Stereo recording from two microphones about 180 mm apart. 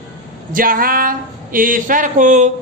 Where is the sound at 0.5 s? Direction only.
50° right (ahead or behind).